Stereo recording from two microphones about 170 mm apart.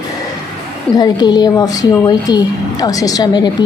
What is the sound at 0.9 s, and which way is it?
A woman's voice, 25° left (ahead or behind).